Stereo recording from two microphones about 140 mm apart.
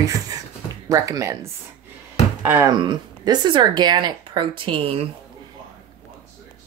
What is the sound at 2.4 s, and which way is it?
Speech, 15° right (ahead or behind).